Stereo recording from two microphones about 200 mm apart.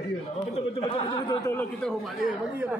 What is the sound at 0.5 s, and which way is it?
Speech, 30° left (ahead or behind).